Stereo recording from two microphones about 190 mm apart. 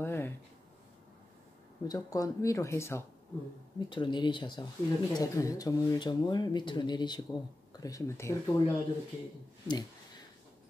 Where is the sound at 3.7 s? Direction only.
25° left (ahead or behind).